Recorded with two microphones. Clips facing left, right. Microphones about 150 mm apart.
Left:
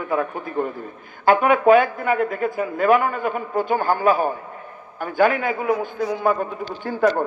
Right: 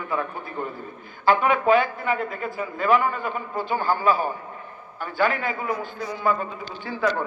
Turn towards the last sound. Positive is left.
turn(degrees=50)  # may be behind; listen again after turning